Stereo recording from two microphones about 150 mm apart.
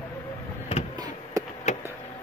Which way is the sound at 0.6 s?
45° left (ahead or behind).